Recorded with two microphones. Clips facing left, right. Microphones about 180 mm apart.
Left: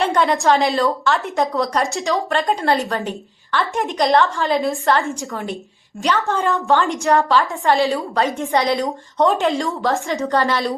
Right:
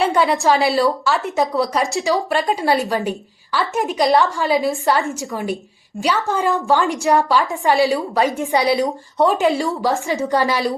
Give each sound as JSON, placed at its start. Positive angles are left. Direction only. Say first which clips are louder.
{"t": 0.0, "sound": "a woman's voice", "louder": "right 1 dB", "side_deg": -5}
{"t": 7.3, "sound": "a woman's voice", "louder": "even", "side_deg": -10}
{"t": 10.2, "sound": "a woman's voice", "louder": "even", "side_deg": -15}